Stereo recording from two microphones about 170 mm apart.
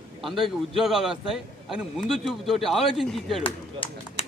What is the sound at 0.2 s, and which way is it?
A man's voice, centre (ahead or behind).